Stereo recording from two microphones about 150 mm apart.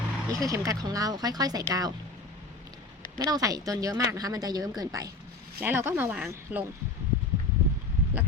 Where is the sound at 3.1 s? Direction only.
25° right (ahead or behind).